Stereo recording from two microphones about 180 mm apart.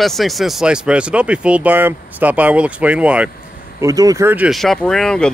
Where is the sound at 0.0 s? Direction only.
Centre (ahead or behind).